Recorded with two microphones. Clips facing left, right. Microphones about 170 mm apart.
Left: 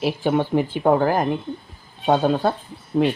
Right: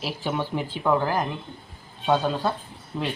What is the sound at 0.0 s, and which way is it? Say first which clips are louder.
Speech: left 8 dB; 55° left (ahead or behind).